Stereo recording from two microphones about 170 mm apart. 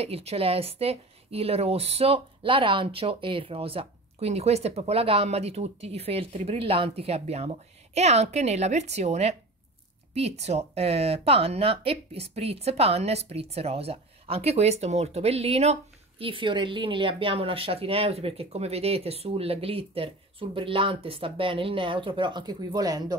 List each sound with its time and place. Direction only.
0.0 s speech: 35° right (ahead or behind)